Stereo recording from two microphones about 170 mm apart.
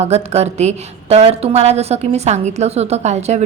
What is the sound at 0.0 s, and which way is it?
A woman's voice, 40° right (ahead or behind).